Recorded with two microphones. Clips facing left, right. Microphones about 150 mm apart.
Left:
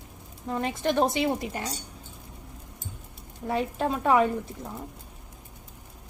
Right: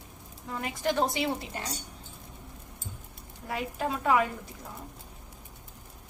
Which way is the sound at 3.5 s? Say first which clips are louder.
Left 5 dB; 25° left (ahead or behind).